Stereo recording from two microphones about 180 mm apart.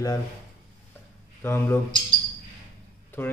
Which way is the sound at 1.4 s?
15° left (ahead or behind).